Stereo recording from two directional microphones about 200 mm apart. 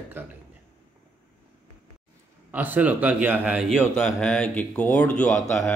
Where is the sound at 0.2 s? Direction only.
10° right (ahead or behind).